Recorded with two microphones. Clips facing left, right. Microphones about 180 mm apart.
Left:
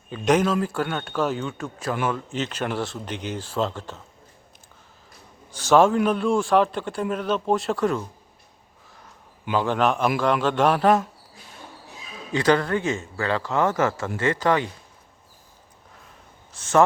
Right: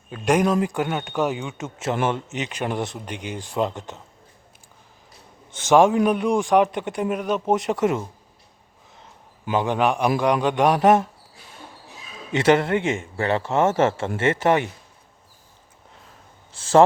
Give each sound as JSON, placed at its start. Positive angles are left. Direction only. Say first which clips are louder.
{"t": 0.1, "sound": "speech", "louder": "right 1 dB", "side_deg": -10}
{"t": 5.5, "sound": "speech", "louder": "right 1 dB", "side_deg": -20}
{"t": 9.5, "sound": "speech", "louder": "right 1 dB", "side_deg": -15}
{"t": 12.3, "sound": "a man's voice", "louder": "right 2 dB", "side_deg": -25}
{"t": 16.5, "sound": "speech", "louder": "right 3 dB", "side_deg": -30}